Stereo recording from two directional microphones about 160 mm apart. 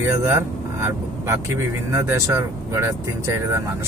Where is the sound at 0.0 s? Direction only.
15° right (ahead or behind).